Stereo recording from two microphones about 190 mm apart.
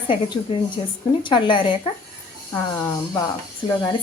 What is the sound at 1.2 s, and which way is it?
Speech, 25° left (ahead or behind).